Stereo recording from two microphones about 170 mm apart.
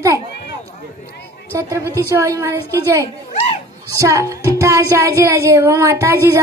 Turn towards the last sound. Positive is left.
turn(degrees=-15)  # may be behind; listen again after turning